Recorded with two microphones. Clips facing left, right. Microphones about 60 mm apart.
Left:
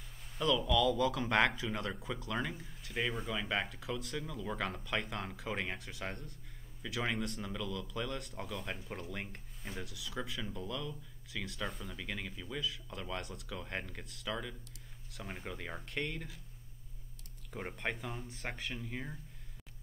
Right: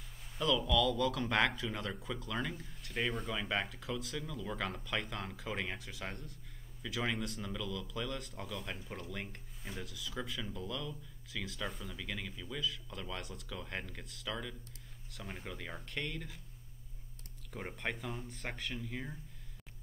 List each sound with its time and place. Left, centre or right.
0.4 s speech: centre
17.5 s speech: centre